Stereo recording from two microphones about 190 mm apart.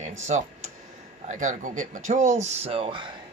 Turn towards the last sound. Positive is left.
turn(degrees=-25)  # may be behind; listen again after turning